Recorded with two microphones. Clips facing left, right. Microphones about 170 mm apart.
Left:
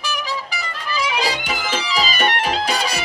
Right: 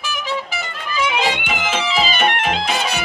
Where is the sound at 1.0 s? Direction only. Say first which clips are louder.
Right 3 dB; 35° left (ahead or behind).